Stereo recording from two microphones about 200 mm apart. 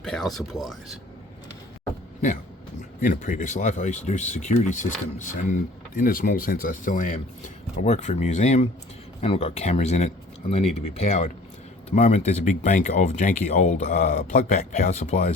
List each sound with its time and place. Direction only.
0.0 s speech: centre (ahead or behind)
3.0 s speech: 40° left (ahead or behind)